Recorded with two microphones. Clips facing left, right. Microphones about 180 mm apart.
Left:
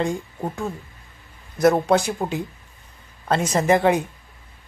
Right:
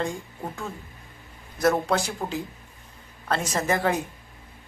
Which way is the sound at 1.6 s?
20° left (ahead or behind).